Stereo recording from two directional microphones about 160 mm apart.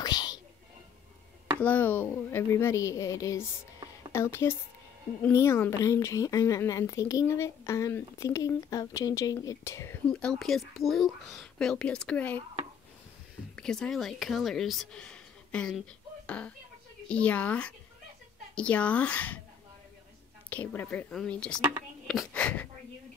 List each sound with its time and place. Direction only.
0.0 s whispering: 25° left (ahead or behind)
1.6 s a woman's voice: 10° left (ahead or behind)
10.2 s speech: centre (ahead or behind)
13.6 s speech: 5° left (ahead or behind)
20.4 s speech: 10° left (ahead or behind)